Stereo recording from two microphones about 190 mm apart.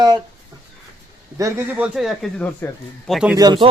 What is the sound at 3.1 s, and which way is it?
Speech, 5° right (ahead or behind).